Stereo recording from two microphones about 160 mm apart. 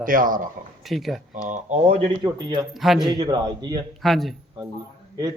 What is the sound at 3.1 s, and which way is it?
Speech, 25° right (ahead or behind).